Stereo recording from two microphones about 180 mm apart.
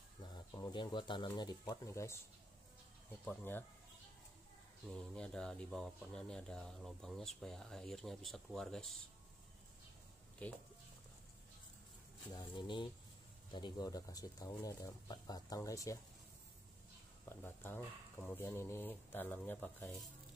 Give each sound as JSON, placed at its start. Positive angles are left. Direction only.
{"t": 0.2, "sound": "speech", "side_deg": 25}
{"t": 3.3, "sound": "speech", "side_deg": 10}
{"t": 4.8, "sound": "speech", "side_deg": 5}
{"t": 10.4, "sound": "speech", "side_deg": 5}
{"t": 12.3, "sound": "speech", "side_deg": 25}
{"t": 17.4, "sound": "speech", "side_deg": 10}